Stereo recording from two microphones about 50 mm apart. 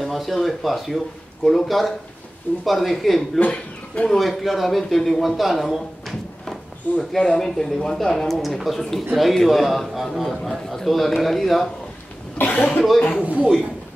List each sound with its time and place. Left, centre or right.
0.0 s speech: centre
3.3 s speech: left
4.2 s a man's voice: centre
7.0 s speech: centre
12.4 s cough: left
13.2 s a man's voice: right